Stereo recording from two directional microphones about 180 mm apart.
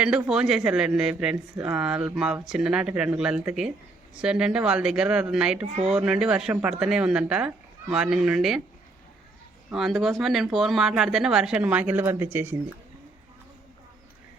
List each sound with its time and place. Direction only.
0.0 s speech: 5° right (ahead or behind)
5.6 s speech: 35° right (ahead or behind)
5.9 s speech: 5° right (ahead or behind)
9.6 s speech: centre (ahead or behind)